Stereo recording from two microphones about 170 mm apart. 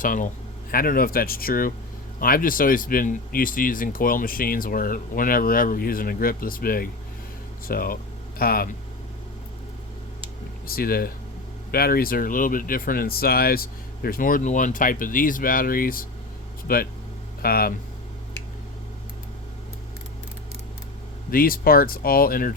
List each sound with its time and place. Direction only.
0.0 s speech: 50° left (ahead or behind)
10.7 s speech: 60° left (ahead or behind)
21.2 s speech: 60° left (ahead or behind)